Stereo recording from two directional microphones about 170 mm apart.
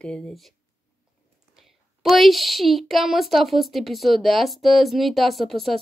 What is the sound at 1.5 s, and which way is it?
A woman's voice, centre (ahead or behind).